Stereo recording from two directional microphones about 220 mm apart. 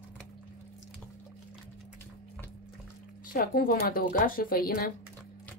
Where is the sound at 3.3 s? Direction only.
40° left (ahead or behind).